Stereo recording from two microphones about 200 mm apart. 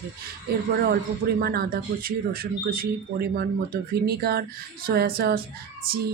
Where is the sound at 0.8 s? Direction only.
50° right (ahead or behind).